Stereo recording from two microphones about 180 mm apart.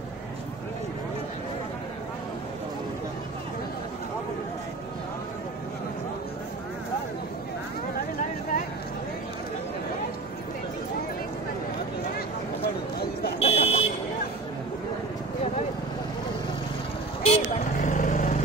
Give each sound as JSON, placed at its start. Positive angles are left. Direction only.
{"t": 13.4, "sound": "buzzer", "side_deg": 35}
{"t": 17.2, "sound": "vehicle", "side_deg": 35}